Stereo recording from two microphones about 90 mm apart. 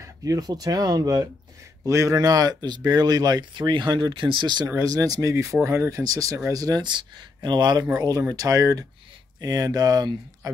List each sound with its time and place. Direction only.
0.2 s speech: 40° right (ahead or behind)
4.7 s speech: 40° right (ahead or behind)
8.0 s speech: 35° right (ahead or behind)